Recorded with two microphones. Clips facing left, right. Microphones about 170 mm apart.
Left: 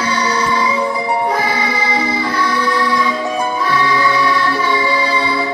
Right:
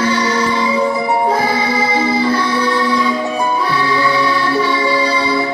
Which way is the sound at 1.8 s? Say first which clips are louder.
Right 3 dB; 25° right (ahead or behind).